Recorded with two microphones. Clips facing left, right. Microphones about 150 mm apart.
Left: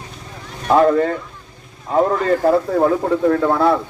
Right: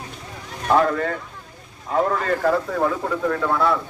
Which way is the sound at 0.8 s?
35° left (ahead or behind).